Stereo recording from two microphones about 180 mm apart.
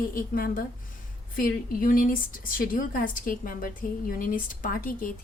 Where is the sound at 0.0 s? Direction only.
50° left (ahead or behind).